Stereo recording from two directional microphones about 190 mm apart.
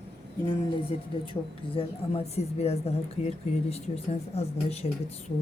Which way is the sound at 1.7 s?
30° left (ahead or behind).